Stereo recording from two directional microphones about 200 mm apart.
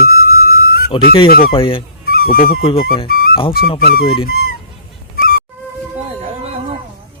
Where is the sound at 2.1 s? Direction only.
50° left (ahead or behind).